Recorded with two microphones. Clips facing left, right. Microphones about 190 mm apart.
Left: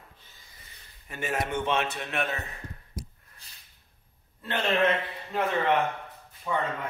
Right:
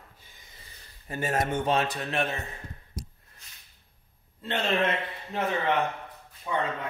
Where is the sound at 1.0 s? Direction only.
35° right (ahead or behind).